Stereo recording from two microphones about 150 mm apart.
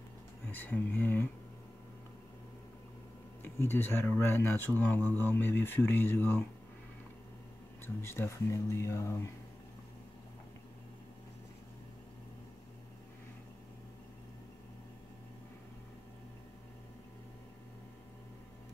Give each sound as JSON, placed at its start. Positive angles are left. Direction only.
{"t": 0.5, "sound": "speech", "side_deg": 10}
{"t": 3.4, "sound": "speech", "side_deg": 15}
{"t": 7.8, "sound": "speech", "side_deg": 15}